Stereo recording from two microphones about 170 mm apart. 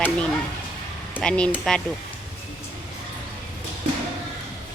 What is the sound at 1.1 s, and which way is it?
Speech, 5° left (ahead or behind).